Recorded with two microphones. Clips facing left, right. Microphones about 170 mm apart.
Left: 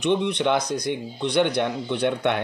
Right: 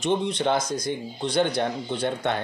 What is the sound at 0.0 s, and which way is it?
Speech, 65° left (ahead or behind).